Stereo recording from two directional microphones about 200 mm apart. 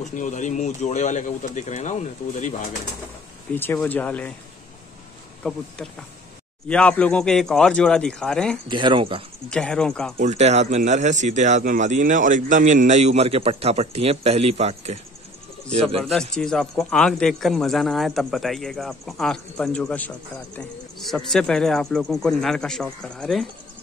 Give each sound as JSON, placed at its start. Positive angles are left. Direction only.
{"t": 0.0, "sound": "speech", "side_deg": 40}
{"t": 3.5, "sound": "speech", "side_deg": 10}
{"t": 6.7, "sound": "a man's voice", "side_deg": 5}
{"t": 8.6, "sound": "speech", "side_deg": -25}
{"t": 9.5, "sound": "a man's voice", "side_deg": 5}
{"t": 10.1, "sound": "speech", "side_deg": -35}
{"t": 16.0, "sound": "a man's voice", "side_deg": 0}